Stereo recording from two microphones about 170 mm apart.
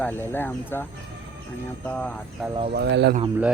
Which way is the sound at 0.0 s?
10° left (ahead or behind).